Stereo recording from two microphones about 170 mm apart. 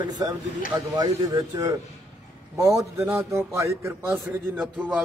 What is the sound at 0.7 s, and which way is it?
A man's voice, 20° right (ahead or behind).